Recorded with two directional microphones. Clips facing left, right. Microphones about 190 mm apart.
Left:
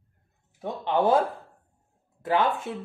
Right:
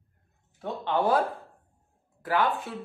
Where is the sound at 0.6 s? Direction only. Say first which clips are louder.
Left 2 dB; 20° left (ahead or behind).